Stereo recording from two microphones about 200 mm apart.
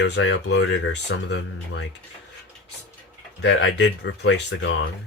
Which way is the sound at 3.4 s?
65° left (ahead or behind).